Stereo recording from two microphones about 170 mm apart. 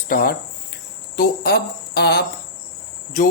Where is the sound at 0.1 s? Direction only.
60° left (ahead or behind).